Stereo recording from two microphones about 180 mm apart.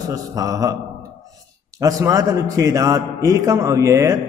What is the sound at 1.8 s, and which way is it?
A man's voice, 20° right (ahead or behind).